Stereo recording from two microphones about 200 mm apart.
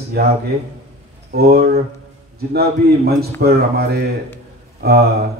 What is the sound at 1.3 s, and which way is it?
Speech, 50° right (ahead or behind).